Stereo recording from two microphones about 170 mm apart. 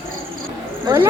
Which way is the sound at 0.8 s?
15° right (ahead or behind).